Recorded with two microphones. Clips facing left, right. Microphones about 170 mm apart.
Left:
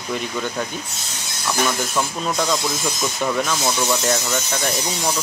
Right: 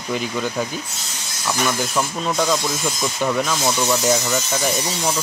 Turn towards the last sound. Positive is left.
turn(degrees=0)  # may be behind; listen again after turning